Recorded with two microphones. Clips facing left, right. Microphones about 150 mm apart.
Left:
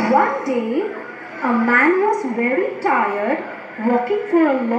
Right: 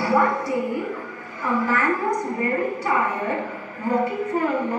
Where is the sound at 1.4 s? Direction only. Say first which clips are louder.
Left 6 dB; 65° left (ahead or behind).